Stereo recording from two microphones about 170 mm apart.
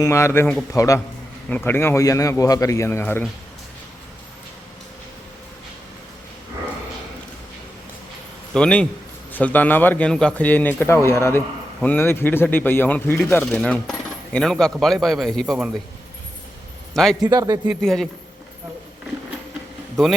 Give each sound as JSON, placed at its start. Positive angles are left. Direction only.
{"t": 0.0, "sound": "a man's voice", "side_deg": 15}
{"t": 8.5, "sound": "a man's voice", "side_deg": 5}
{"t": 16.9, "sound": "a man's voice", "side_deg": 5}
{"t": 17.2, "sound": "speech", "side_deg": -20}
{"t": 17.7, "sound": "a man's voice", "side_deg": 0}